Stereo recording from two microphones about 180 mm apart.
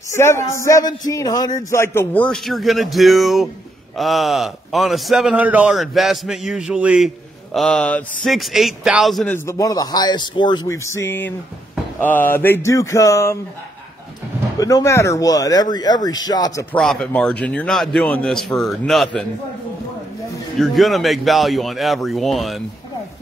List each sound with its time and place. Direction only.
0.1 s a man's voice: 15° left (ahead or behind); by 7.1 s 5° right (ahead or behind)
7.5 s speech: 5° left (ahead or behind)
9.3 s a man's voice: 15° left (ahead or behind)
14.6 s a man's voice: 20° left (ahead or behind)
16.7 s speech: 5° left (ahead or behind)
20.5 s speech: centre (ahead or behind)